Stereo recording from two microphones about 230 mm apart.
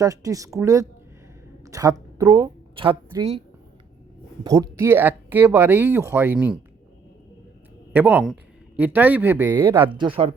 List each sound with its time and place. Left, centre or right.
0.0 s a woman's voice: centre
4.4 s speech: centre
7.9 s speech: centre
9.6 s speech: right